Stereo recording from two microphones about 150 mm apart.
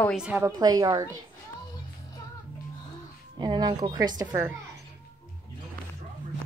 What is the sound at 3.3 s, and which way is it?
Speech, 30° right (ahead or behind).